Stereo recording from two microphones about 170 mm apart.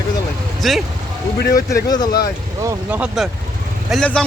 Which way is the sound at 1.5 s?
20° left (ahead or behind).